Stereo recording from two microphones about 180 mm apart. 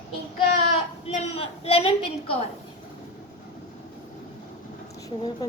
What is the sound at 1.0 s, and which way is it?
A woman's voice, 35° left (ahead or behind).